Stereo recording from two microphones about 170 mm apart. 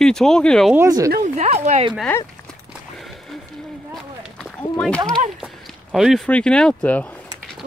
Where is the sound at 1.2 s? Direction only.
40° right (ahead or behind).